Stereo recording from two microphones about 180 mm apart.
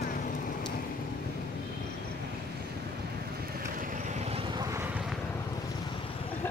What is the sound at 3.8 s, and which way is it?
Vehicle, 45° right (ahead or behind).